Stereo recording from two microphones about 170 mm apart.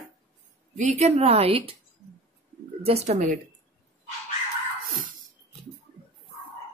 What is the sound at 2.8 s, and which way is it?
Speech, 40° right (ahead or behind).